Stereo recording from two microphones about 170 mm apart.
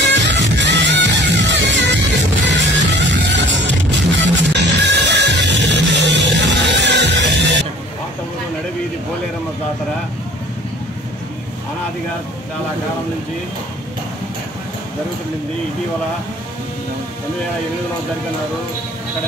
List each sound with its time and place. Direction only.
0.1 s music: 90° right